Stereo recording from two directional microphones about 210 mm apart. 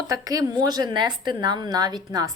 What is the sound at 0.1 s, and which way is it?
A woman's voice, 15° right (ahead or behind).